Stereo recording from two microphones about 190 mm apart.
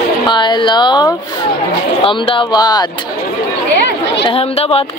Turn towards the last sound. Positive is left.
turn(degrees=30)  # may be behind; listen again after turning